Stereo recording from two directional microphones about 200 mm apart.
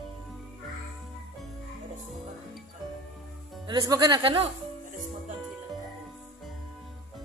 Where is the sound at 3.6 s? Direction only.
20° right (ahead or behind).